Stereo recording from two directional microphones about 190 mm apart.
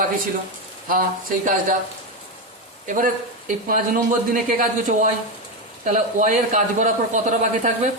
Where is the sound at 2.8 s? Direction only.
45° right (ahead or behind).